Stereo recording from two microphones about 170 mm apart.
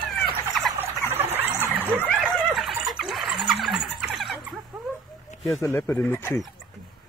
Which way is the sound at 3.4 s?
Centre (ahead or behind).